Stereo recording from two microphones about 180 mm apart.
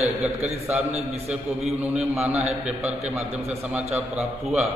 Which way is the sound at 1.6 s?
5° right (ahead or behind).